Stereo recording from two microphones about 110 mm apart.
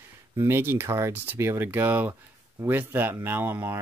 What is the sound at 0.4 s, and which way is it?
Speech, 20° right (ahead or behind).